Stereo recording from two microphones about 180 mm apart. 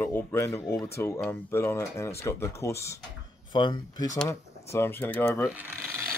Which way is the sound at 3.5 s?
25° left (ahead or behind).